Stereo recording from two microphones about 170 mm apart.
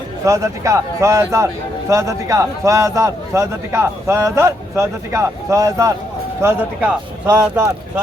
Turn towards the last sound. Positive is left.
turn(degrees=-20)  # may be behind; listen again after turning